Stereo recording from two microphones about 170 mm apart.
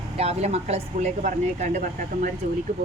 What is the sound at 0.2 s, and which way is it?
Speech, 40° right (ahead or behind).